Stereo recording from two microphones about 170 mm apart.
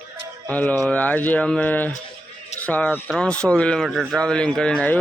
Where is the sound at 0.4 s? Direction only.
10° left (ahead or behind).